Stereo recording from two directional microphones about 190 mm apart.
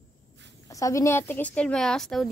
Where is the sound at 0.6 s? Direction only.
15° left (ahead or behind); by 2.3 s centre (ahead or behind).